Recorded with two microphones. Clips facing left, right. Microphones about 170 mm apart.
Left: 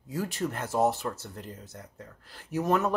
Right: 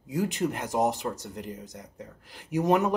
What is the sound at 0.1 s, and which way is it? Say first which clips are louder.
Speech: right 4 dB; 15° right (ahead or behind).